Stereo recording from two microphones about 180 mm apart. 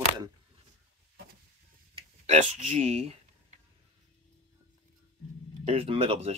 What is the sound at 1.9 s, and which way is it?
Speech, 35° right (ahead or behind).